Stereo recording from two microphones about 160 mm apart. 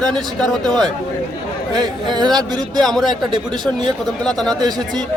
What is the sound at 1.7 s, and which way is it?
Speech, 25° right (ahead or behind).